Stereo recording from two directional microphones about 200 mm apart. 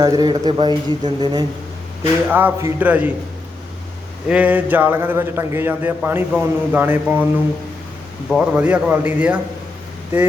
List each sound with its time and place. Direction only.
0.0 s a man's voice: 20° right (ahead or behind)
4.3 s a man's voice: 5° right (ahead or behind)
8.3 s a man's voice: 5° right (ahead or behind)